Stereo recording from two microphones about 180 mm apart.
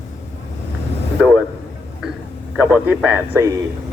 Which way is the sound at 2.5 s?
10° right (ahead or behind).